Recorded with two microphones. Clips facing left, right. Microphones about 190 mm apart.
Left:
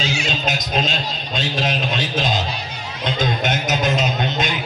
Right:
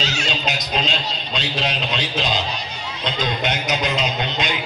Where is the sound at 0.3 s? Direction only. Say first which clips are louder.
Left 2 dB; 50° left (ahead or behind).